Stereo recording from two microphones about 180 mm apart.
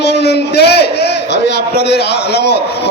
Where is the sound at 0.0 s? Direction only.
70° left (ahead or behind).